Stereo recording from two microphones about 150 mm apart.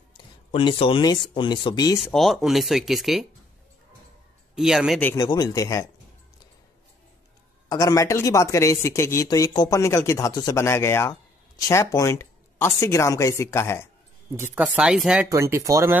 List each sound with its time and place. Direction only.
0.5 s speech: 35° left (ahead or behind)
2.0 s speech: centre (ahead or behind)
4.6 s speech: centre (ahead or behind)
5.1 s a man's voice: 25° left (ahead or behind)
7.7 s a man's voice: 20° left (ahead or behind)
14.4 s speech: 5° right (ahead or behind)
15.2 s speech: 20° right (ahead or behind)